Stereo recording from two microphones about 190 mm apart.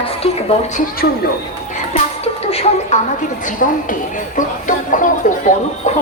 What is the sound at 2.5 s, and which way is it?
Speech, 30° left (ahead or behind).